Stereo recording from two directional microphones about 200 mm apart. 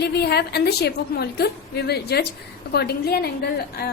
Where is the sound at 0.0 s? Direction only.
55° left (ahead or behind).